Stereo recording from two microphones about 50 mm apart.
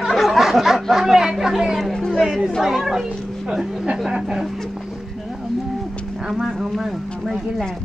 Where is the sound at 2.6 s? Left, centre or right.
Centre.